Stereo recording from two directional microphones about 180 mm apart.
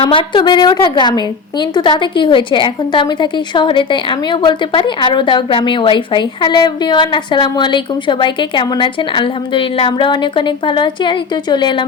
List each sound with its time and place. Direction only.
0.0 s a woman's voice: 30° left (ahead or behind)